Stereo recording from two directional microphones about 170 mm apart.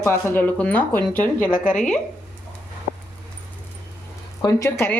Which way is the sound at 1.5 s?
50° left (ahead or behind).